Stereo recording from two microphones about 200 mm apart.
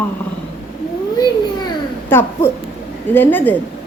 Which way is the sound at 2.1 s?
10° left (ahead or behind).